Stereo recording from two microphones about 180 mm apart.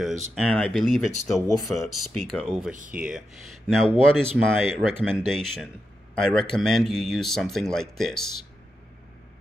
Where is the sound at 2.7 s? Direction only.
45° right (ahead or behind).